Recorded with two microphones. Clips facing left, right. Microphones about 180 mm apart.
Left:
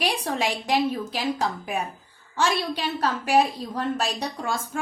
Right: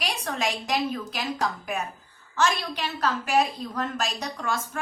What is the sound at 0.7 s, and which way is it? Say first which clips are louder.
A woman's voice: left 4 dB; 30° left (ahead or behind).